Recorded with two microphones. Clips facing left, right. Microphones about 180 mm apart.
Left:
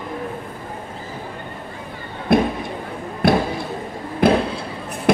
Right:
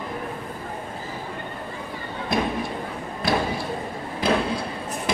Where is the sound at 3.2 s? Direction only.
60° left (ahead or behind).